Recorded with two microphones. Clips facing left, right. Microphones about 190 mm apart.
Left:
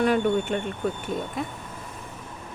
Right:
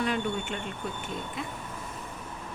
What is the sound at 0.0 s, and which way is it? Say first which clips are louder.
Speech: left 8 dB; 55° left (ahead or behind).